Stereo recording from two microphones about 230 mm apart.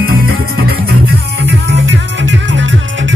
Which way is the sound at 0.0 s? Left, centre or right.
Right.